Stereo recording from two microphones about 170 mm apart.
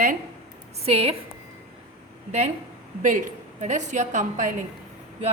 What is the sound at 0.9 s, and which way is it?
Speech, 35° right (ahead or behind).